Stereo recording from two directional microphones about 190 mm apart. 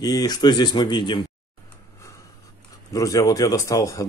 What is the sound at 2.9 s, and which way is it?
Speech, 15° left (ahead or behind).